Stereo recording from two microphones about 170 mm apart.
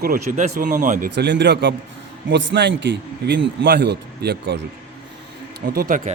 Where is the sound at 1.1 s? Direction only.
85° right.